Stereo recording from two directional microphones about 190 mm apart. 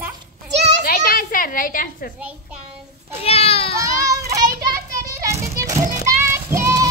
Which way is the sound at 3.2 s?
30° left (ahead or behind).